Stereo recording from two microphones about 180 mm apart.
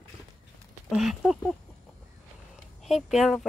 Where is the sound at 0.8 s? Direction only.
Centre (ahead or behind).